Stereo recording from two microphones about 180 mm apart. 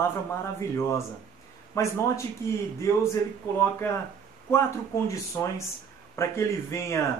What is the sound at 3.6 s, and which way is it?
Speech, 15° left (ahead or behind).